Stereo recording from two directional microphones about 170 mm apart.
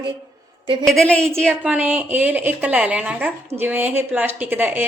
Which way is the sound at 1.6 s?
10° right (ahead or behind).